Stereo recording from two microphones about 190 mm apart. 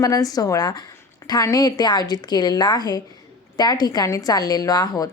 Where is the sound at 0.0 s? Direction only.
20° left (ahead or behind).